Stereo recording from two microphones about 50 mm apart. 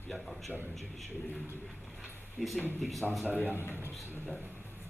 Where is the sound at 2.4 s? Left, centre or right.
Centre.